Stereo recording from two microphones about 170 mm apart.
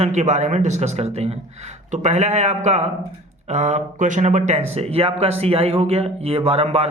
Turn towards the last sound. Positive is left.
turn(degrees=-35)  # may be behind; listen again after turning